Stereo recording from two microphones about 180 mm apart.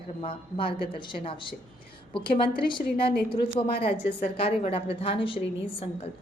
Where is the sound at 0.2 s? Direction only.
30° left (ahead or behind).